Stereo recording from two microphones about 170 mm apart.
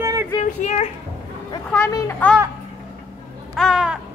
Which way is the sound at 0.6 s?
40° left (ahead or behind).